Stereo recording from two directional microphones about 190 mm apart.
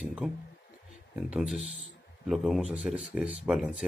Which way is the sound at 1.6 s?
35° right (ahead or behind).